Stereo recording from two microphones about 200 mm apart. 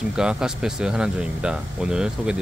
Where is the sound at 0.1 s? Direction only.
5° right (ahead or behind).